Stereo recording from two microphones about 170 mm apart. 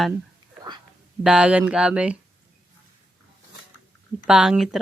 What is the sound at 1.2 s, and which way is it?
Speech, 5° right (ahead or behind).